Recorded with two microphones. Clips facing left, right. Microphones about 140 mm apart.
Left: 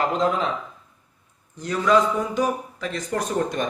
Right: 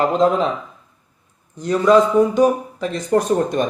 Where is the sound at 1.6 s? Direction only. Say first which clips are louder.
Right 6 dB; 25° right (ahead or behind).